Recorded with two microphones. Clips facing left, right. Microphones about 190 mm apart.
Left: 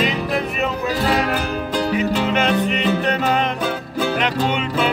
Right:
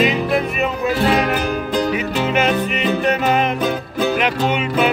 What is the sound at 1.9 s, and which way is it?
Music, 10° right (ahead or behind).